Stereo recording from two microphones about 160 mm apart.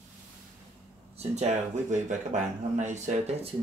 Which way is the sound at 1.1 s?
45° right (ahead or behind).